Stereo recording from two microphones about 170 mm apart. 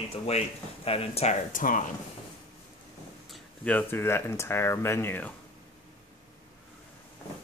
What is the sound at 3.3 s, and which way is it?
Speech, 5° left (ahead or behind).